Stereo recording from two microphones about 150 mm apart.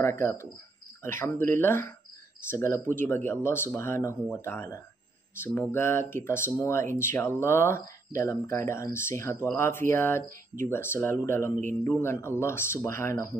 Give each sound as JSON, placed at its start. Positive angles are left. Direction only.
{"t": 0.0, "sound": "speech", "side_deg": 15}